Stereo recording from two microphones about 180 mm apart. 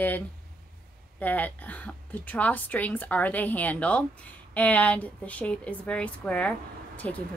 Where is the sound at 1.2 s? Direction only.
10° left (ahead or behind).